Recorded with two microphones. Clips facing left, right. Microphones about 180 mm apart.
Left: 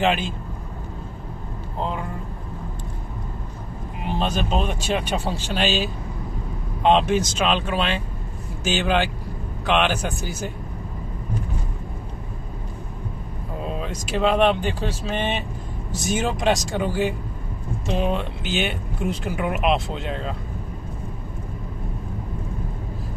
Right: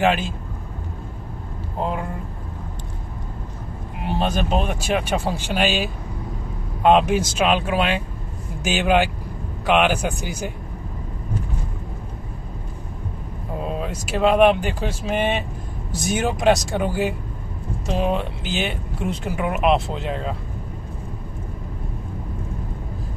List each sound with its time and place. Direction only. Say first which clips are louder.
0.0 s speech: right 2 dB; 5° right (ahead or behind)
4.2 s speech: right 2 dB; 50° right (ahead or behind)
5.0 s speech: right 2 dB; 10° right (ahead or behind)
6.9 s speech: right 2 dB; 10° right (ahead or behind)
13.6 s speech: right 2 dB; centre (ahead or behind)